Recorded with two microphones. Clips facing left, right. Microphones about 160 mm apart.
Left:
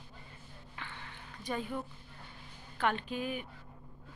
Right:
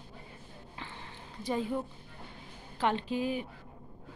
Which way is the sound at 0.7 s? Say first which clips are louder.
Right 1 dB; 30° right (ahead or behind).